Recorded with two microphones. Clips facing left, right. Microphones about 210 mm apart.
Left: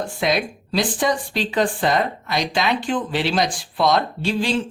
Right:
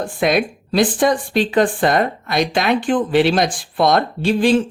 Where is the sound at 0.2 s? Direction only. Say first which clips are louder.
Right 5 dB; 55° right (ahead or behind).